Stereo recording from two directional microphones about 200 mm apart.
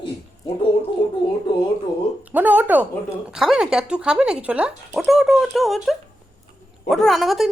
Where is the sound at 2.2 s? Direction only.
10° right (ahead or behind).